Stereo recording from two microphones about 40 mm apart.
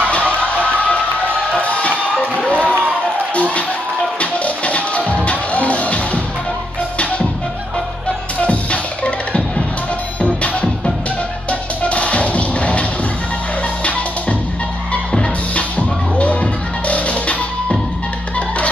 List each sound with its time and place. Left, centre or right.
0.7 s music: left
2.4 s crowd: left
4.2 s music: left
10.2 s music: left
11.8 s music: left
16.2 s music: left